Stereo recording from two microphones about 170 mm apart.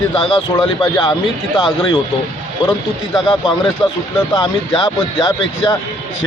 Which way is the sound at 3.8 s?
25° left (ahead or behind).